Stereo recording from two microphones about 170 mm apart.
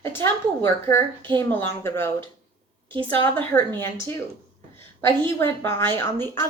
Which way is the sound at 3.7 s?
15° left (ahead or behind).